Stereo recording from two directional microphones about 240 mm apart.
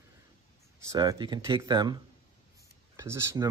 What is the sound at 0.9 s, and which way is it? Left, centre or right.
Speech, centre.